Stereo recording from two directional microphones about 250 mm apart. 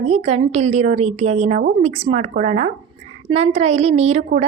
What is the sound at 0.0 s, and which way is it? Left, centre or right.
A woman's voice, right.